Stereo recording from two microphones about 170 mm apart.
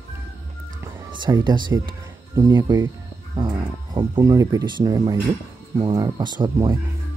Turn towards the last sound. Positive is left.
turn(degrees=-25)  # may be behind; listen again after turning